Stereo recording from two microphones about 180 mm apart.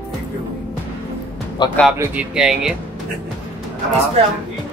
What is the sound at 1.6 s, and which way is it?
Speech, 25° left (ahead or behind).